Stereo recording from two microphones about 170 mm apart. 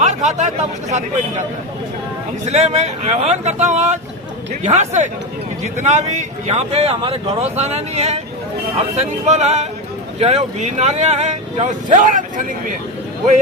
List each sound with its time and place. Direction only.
0.0 s speech: 45° right (ahead or behind)
2.5 s speech: 40° right (ahead or behind)